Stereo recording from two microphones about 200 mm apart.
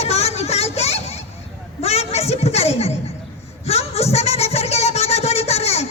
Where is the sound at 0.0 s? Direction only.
30° left (ahead or behind).